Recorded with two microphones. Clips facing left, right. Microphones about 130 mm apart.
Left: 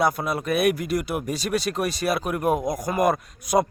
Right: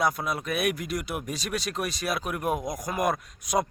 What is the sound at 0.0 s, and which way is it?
Speech, centre (ahead or behind).